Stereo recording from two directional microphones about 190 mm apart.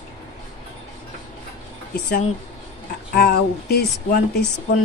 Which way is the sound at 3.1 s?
55° left (ahead or behind).